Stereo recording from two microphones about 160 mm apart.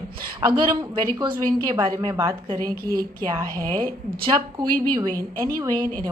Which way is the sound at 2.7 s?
70° right (ahead or behind).